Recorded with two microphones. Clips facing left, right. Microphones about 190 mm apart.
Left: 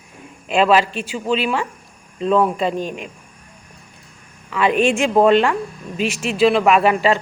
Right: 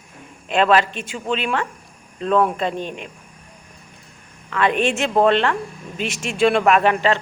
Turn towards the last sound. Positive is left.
turn(degrees=5)  # may be behind; listen again after turning